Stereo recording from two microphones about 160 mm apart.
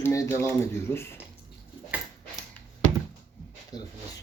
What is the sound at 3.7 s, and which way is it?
Speech, 25° left (ahead or behind).